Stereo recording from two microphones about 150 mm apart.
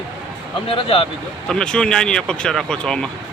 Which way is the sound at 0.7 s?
35° left (ahead or behind).